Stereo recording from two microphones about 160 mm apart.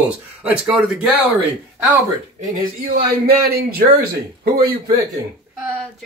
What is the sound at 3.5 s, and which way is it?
Speech, 70° right (ahead or behind).